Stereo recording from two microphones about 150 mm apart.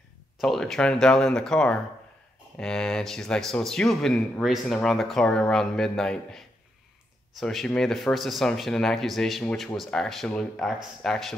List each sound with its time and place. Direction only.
0.4 s a man's voice: centre (ahead or behind)